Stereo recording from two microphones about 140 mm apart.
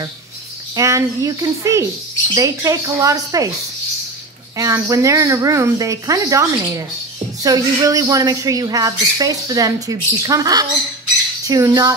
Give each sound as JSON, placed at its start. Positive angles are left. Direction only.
{"t": 0.7, "sound": "speech", "side_deg": -25}
{"t": 4.6, "sound": "speech", "side_deg": -20}